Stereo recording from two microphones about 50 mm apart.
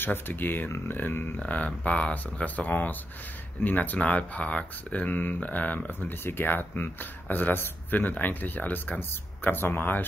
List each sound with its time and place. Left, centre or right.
0.0 s speech: left
1.4 s speech: left
9.1 s speech: left